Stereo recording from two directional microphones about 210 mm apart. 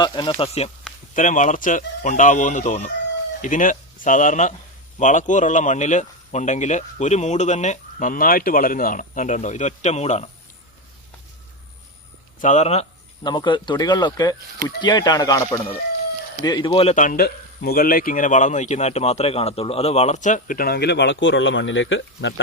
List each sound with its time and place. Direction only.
0.0 s a man's voice: 20° left (ahead or behind)
12.4 s a man's voice: 35° left (ahead or behind)
13.2 s a man's voice: 20° left (ahead or behind); by 22.4 s 65° left (ahead or behind)